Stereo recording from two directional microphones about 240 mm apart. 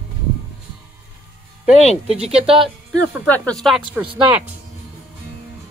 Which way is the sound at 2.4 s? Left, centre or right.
Right.